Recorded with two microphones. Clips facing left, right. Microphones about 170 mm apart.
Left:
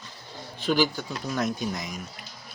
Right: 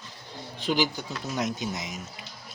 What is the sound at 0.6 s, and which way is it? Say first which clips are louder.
Speech: left 2 dB; 20° right (ahead or behind).